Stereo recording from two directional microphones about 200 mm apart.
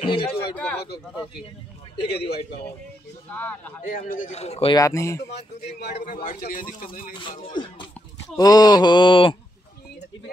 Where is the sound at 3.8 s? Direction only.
45° left (ahead or behind).